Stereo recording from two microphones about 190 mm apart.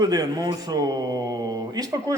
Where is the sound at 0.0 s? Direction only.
20° right (ahead or behind).